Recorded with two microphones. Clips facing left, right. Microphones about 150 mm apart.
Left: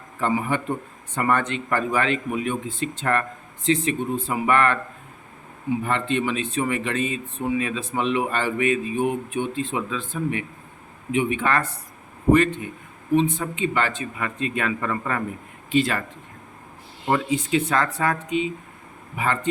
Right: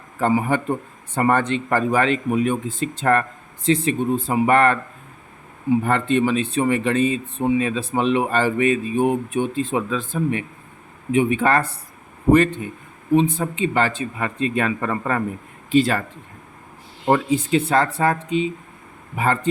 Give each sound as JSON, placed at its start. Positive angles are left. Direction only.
{"t": 0.2, "sound": "speech", "side_deg": -40}
{"t": 5.8, "sound": "speech", "side_deg": -40}
{"t": 13.1, "sound": "speech", "side_deg": -35}
{"t": 17.1, "sound": "speech", "side_deg": -35}